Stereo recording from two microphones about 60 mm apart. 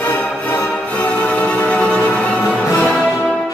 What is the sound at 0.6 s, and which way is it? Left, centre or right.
Music, left.